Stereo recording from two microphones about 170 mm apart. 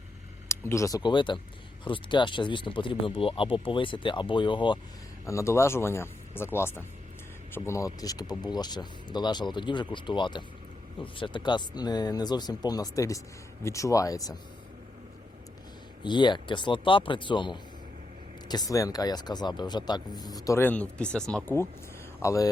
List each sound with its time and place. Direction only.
0.4 s speech: 15° left (ahead or behind)
5.2 s speech: 15° left (ahead or behind)
16.0 s speech: 25° left (ahead or behind)